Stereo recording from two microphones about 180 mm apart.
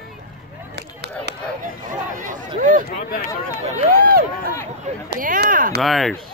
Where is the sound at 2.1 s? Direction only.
45° right (ahead or behind).